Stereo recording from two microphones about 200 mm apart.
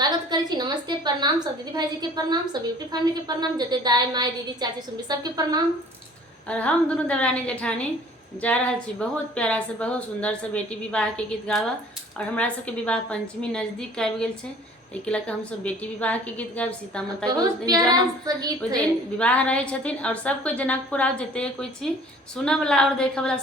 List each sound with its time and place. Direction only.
0.0 s a woman's voice: 20° right (ahead or behind)
6.5 s a woman's voice: 5° left (ahead or behind)
17.2 s a woman's voice: 20° right (ahead or behind)
19.2 s a woman's voice: 5° left (ahead or behind)